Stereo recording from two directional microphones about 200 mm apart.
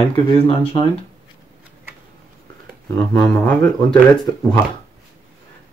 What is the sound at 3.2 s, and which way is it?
Speech, 10° left (ahead or behind).